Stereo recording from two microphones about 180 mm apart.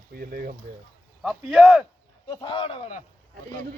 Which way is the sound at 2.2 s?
25° left (ahead or behind).